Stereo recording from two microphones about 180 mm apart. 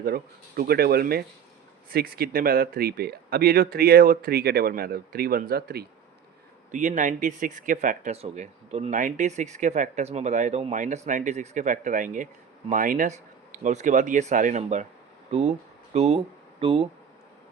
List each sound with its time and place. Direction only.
0.0 s speech: 55° right (ahead or behind)
6.7 s speech: 45° right (ahead or behind)